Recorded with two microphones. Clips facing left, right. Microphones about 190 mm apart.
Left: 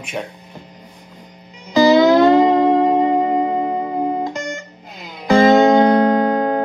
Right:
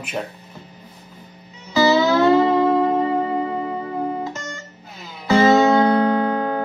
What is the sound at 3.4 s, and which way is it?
Music, 35° left (ahead or behind).